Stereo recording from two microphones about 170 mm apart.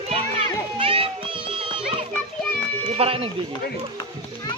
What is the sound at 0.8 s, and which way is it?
Music, 30° right (ahead or behind).